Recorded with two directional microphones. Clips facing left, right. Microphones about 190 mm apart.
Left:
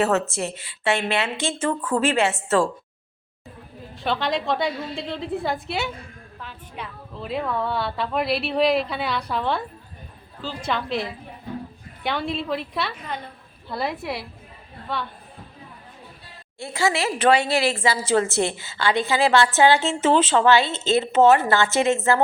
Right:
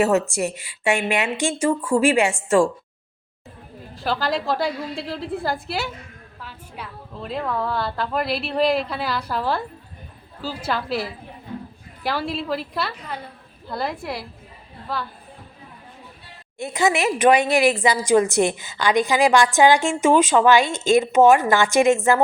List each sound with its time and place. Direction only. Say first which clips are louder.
0.0 s a woman's voice: right 3 dB; 10° right (ahead or behind)
3.9 s a woman's voice: right 1 dB; centre (ahead or behind)
16.6 s a woman's voice: right 3 dB; 20° right (ahead or behind)